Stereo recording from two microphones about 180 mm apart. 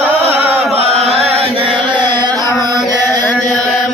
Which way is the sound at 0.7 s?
35° right (ahead or behind).